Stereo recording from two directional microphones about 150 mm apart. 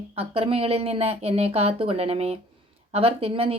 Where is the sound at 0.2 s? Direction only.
40° right (ahead or behind).